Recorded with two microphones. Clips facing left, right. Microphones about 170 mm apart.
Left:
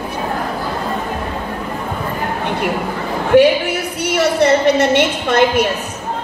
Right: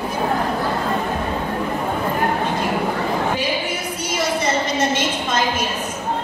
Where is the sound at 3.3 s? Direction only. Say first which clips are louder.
Left 12 dB; 65° left (ahead or behind).